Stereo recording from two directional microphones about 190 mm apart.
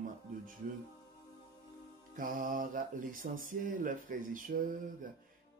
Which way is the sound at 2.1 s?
45° right (ahead or behind).